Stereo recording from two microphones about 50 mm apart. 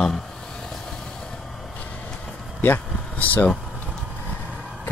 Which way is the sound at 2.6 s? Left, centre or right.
Left.